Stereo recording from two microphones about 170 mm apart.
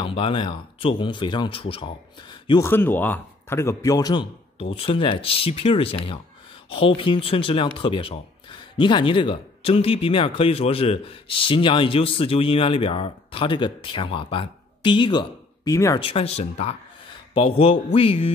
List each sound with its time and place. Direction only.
0.0 s speech: 30° left (ahead or behind)
2.7 s speech: 10° left (ahead or behind)
16.0 s speech: 35° left (ahead or behind)